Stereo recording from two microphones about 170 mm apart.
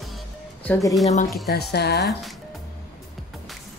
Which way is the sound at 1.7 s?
70° left (ahead or behind).